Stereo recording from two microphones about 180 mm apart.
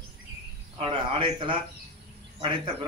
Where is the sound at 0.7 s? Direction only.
30° right (ahead or behind).